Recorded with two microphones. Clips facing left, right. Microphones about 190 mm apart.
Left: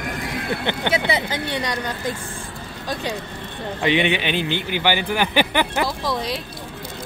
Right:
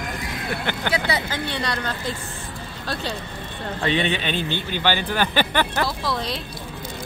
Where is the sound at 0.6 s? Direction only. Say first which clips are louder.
Left 2 dB; 20° left (ahead or behind).